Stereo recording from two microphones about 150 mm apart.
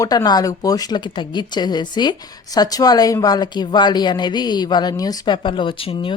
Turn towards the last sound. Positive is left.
turn(degrees=35)  # may be behind; listen again after turning